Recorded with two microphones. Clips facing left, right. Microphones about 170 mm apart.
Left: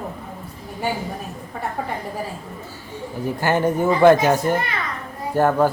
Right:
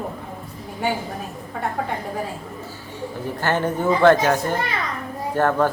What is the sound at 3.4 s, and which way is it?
A man's voice, 10° left (ahead or behind).